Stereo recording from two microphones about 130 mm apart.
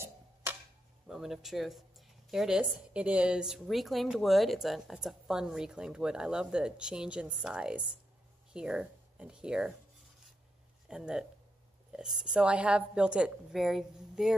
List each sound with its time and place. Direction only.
0.0 s tick-tock: 20° right (ahead or behind)
1.0 s speech: 5° right (ahead or behind)
10.9 s speech: 5° right (ahead or behind)